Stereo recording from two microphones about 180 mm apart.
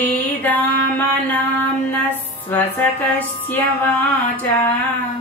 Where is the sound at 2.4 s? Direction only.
10° left (ahead or behind).